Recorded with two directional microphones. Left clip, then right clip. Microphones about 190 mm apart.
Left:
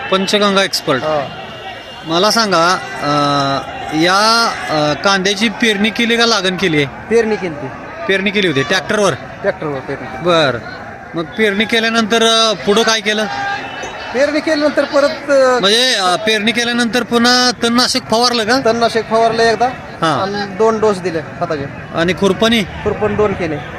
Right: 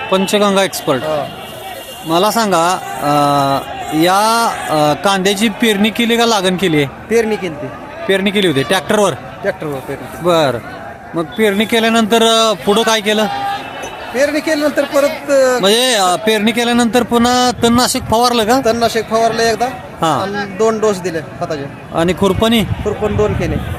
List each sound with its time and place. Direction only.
0.1 s speech: 15° right (ahead or behind)
2.0 s speech: 20° right (ahead or behind)